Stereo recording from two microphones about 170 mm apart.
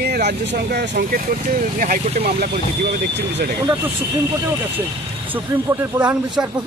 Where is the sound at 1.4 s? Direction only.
55° right (ahead or behind).